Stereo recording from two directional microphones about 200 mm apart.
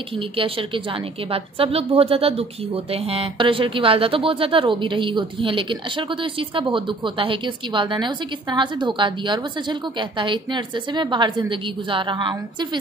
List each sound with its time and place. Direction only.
0.1 s a woman's voice: 25° right (ahead or behind)